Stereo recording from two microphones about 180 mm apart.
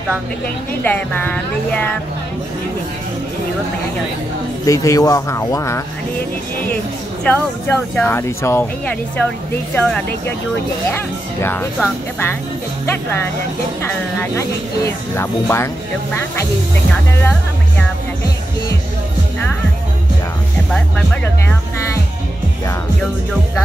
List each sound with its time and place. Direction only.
0.8 s speech: 10° left (ahead or behind)
4.6 s speech: 20° left (ahead or behind)
7.2 s speech: 10° left (ahead or behind)
11.4 s speech: 10° left (ahead or behind)
13.8 s speech: 10° left (ahead or behind)
17.2 s music: 5° left (ahead or behind)
20.7 s speech: 5° left (ahead or behind)